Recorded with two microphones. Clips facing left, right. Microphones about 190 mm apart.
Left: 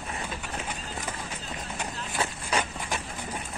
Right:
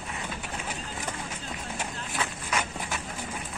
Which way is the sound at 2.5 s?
30° left (ahead or behind).